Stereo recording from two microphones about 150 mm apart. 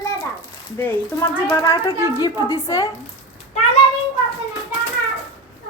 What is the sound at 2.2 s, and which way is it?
Speech, 20° left (ahead or behind).